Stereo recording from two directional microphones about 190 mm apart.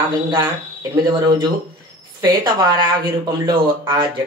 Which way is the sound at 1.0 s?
25° right (ahead or behind).